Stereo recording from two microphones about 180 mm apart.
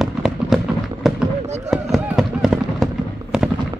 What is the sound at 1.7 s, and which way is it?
Fireworks, centre (ahead or behind).